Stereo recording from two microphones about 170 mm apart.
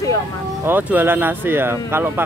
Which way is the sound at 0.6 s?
10° right (ahead or behind).